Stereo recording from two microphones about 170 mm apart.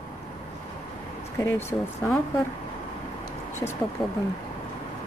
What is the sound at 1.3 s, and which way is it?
Speech, 15° left (ahead or behind).